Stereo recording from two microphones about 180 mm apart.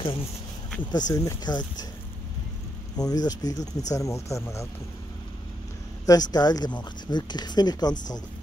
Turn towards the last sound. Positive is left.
turn(degrees=20)  # may be behind; listen again after turning